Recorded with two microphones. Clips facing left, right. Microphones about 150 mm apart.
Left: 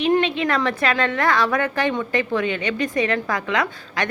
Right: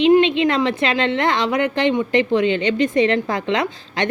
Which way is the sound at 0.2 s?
25° right (ahead or behind).